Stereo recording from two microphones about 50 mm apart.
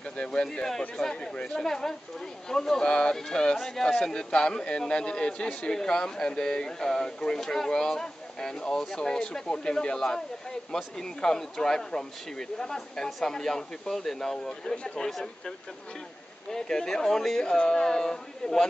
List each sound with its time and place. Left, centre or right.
0.2 s speech: centre
3.8 s speech: centre
16.5 s speech: centre